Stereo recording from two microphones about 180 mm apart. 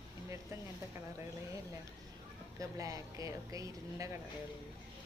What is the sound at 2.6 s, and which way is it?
Speech, 20° right (ahead or behind).